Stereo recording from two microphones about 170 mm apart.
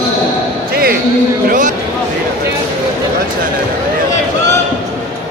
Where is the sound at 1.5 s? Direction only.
50° right (ahead or behind).